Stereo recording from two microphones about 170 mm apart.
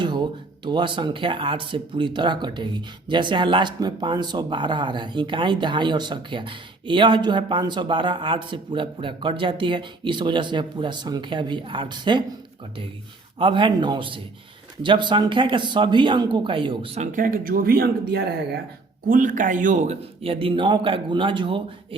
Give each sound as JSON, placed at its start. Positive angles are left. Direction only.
{"t": 0.0, "sound": "speech", "side_deg": -25}
{"t": 13.4, "sound": "speech", "side_deg": -30}
{"t": 17.1, "sound": "speech", "side_deg": -55}
{"t": 19.0, "sound": "a man's voice", "side_deg": -50}